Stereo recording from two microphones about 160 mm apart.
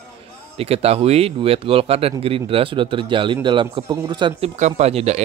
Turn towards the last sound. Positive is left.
turn(degrees=-40)  # may be behind; listen again after turning